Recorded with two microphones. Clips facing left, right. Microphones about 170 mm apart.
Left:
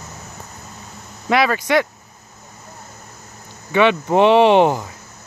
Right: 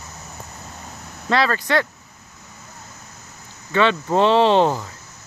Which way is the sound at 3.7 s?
15° left (ahead or behind).